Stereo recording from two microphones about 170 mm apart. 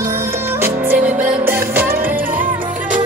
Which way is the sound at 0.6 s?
10° right (ahead or behind).